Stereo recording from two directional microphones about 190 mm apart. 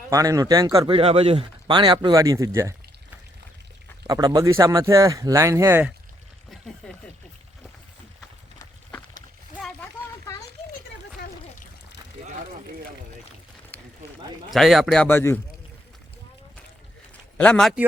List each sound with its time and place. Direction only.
0.1 s speech: 20° right (ahead or behind)
4.0 s speech: 20° right (ahead or behind)
8.5 s walk: 20° left (ahead or behind)
13.7 s a sound: 10° left (ahead or behind)
14.5 s speech: centre (ahead or behind)
17.3 s speech: 5° left (ahead or behind)